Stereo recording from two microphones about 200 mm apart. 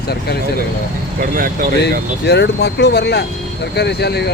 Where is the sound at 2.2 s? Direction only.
55° left (ahead or behind).